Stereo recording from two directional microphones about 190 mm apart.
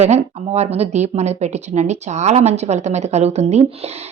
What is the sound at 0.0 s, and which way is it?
A woman's voice, 35° right (ahead or behind).